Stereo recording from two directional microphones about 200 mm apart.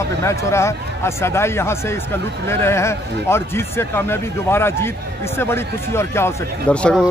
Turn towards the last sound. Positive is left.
turn(degrees=0)  # may be behind; listen again after turning